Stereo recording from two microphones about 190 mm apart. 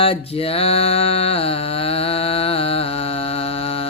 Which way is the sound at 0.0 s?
30° left (ahead or behind).